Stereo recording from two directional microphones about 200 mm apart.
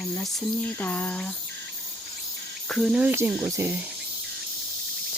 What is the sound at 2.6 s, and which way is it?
Speech, centre (ahead or behind).